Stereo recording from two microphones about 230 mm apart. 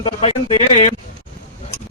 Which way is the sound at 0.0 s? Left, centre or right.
Left.